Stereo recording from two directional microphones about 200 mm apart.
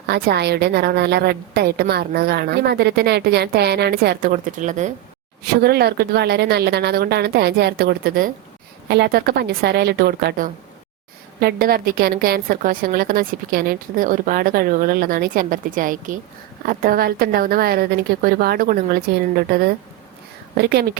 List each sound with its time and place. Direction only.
0.1 s a woman's voice: 55° right (ahead or behind); by 4.9 s 40° right (ahead or behind)
5.6 s a woman's voice: 55° right (ahead or behind)